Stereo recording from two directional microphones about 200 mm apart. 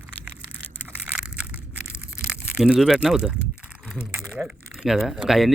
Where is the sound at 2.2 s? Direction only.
5° right (ahead or behind).